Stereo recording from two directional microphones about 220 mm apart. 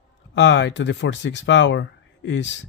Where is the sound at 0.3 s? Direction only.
55° left (ahead or behind).